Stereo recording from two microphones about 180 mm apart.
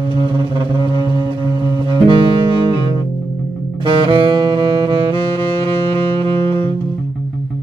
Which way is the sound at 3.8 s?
25° right (ahead or behind).